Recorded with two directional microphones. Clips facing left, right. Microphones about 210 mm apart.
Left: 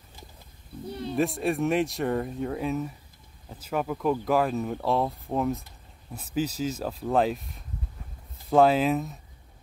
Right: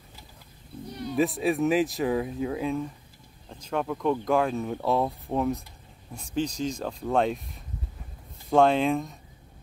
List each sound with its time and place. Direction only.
0.8 s speech: 30° left (ahead or behind)
1.1 s speech: centre (ahead or behind)